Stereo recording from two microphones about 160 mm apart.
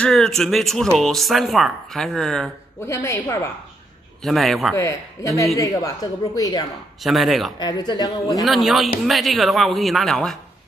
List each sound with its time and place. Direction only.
0.0 s speech: 5° left (ahead or behind)
2.9 s a woman's voice: 15° left (ahead or behind)
4.2 s speech: centre (ahead or behind)
4.7 s a woman's voice: 20° left (ahead or behind)
7.0 s speech: centre (ahead or behind)
7.5 s a woman's voice: 25° left (ahead or behind)
8.4 s speech: centre (ahead or behind)